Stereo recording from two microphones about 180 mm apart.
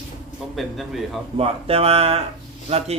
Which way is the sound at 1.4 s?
35° right (ahead or behind).